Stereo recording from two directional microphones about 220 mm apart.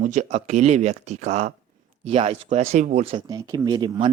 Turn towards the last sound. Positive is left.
turn(degrees=-20)  # may be behind; listen again after turning